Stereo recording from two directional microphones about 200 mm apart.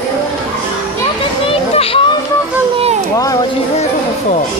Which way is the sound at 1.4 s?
30° left (ahead or behind).